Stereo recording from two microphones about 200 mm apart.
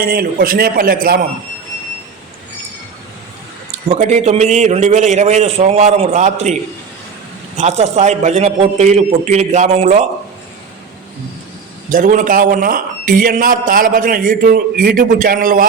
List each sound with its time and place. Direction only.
0.0 s a man's voice: 50° right (ahead or behind)
3.8 s a man's voice: 35° right (ahead or behind)
7.5 s a man's voice: 35° right (ahead or behind)
11.9 s a man's voice: 40° right (ahead or behind)